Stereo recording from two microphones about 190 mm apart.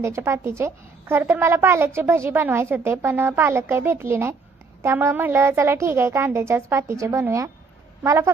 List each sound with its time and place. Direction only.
0.0 s a woman's voice: 15° right (ahead or behind)